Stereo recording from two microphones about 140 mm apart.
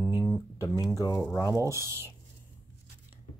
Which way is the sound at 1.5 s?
20° right (ahead or behind).